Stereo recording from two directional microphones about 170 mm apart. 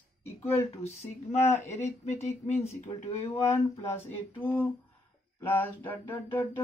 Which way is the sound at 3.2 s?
15° left (ahead or behind).